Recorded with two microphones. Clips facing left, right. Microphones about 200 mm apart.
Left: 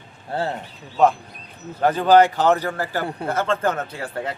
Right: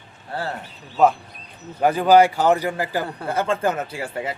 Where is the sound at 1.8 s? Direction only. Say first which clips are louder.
Even; 10° right (ahead or behind).